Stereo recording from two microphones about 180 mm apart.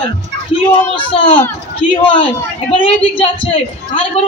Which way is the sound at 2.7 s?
30° left (ahead or behind).